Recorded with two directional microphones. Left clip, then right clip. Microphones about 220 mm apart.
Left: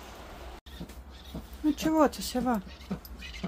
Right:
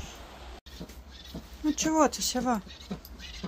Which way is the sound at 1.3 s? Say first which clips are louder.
Left 2 dB; 35° left (ahead or behind).